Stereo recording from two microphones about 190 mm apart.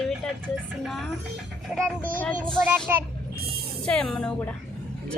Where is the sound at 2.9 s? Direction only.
10° right (ahead or behind).